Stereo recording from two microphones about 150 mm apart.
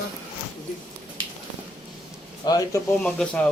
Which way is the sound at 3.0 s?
5° left (ahead or behind).